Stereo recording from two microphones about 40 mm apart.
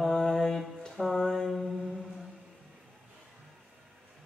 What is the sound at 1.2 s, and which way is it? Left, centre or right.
Mantra, centre.